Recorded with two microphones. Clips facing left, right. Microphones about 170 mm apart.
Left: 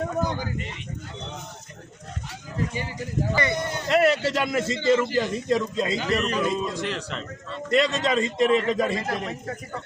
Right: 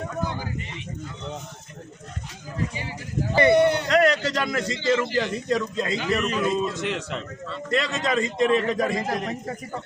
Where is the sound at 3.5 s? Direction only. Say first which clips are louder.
Right 11 dB; 65° right (ahead or behind).